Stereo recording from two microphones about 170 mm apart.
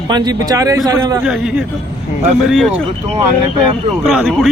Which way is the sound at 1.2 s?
5° right (ahead or behind).